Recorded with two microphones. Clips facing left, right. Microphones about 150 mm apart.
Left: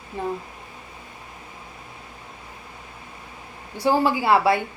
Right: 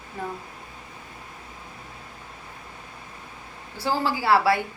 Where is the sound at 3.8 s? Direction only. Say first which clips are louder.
Left 5 dB; 20° left (ahead or behind).